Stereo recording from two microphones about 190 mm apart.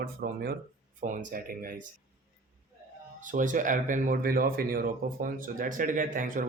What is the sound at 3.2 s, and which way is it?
Speech, 45° right (ahead or behind).